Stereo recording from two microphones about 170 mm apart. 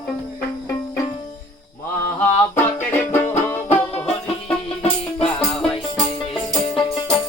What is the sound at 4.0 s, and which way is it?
Music, 35° left (ahead or behind).